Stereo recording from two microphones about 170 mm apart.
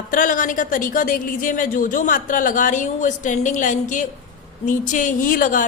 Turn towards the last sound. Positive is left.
turn(degrees=50)  # may be behind; listen again after turning